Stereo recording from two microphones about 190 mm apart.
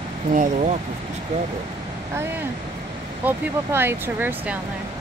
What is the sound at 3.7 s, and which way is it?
Speech, 10° right (ahead or behind).